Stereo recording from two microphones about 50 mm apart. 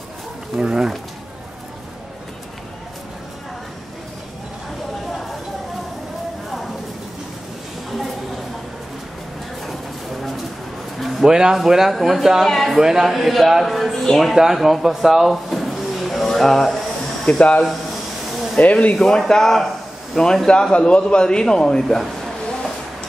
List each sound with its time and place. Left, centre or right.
0.6 s speech: centre
11.0 s a sound: centre
11.2 s speech: centre
12.4 s speech: centre
12.8 s speech: centre
14.3 s a sound: centre
17.4 s speech: left
18.9 s a man's voice: centre
21.8 s a sound: centre